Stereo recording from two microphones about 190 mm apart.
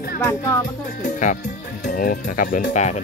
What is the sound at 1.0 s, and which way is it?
Music, 40° left (ahead or behind).